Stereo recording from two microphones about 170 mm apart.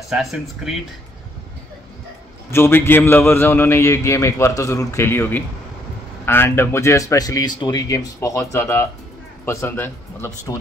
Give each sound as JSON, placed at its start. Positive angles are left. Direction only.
{"t": 0.1, "sound": "speech", "side_deg": 0}
{"t": 2.5, "sound": "a man's voice", "side_deg": 15}